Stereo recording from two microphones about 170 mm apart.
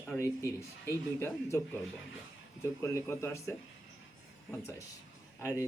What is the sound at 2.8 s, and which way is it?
Speech, 15° left (ahead or behind).